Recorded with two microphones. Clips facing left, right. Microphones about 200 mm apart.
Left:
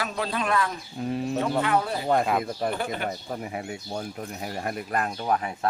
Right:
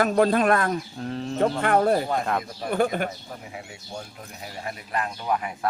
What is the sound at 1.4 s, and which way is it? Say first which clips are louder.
A man's voice: right 5 dB; 50° right (ahead or behind).